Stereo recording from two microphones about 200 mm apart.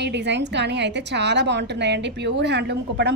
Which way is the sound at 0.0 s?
60° right (ahead or behind).